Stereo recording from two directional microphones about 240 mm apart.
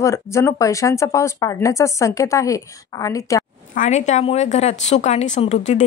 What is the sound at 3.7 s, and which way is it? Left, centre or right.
A woman's voice, left.